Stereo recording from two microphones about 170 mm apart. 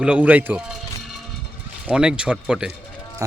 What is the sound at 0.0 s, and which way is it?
Speech, 5° right (ahead or behind).